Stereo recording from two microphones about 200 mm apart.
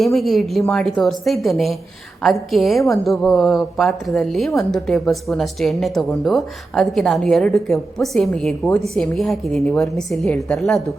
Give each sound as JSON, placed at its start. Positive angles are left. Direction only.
{"t": 0.0, "sound": "a woman's voice", "side_deg": 0}